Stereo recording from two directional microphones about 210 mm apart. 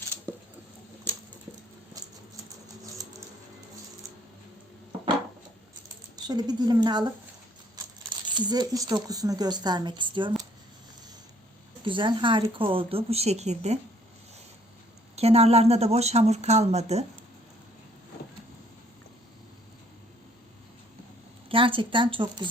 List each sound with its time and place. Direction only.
2.0 s rodents: 15° right (ahead or behind)
6.1 s speech: 20° right (ahead or behind)
8.3 s speech: 20° right (ahead or behind)
11.9 s speech: 25° right (ahead or behind)
15.1 s speech: 30° right (ahead or behind)
21.5 s speech: 25° right (ahead or behind)